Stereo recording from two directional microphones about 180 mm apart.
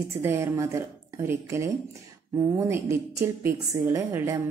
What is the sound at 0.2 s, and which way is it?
Speech, 15° right (ahead or behind).